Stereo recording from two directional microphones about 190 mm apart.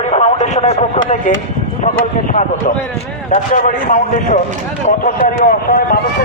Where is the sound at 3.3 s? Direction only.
40° left (ahead or behind).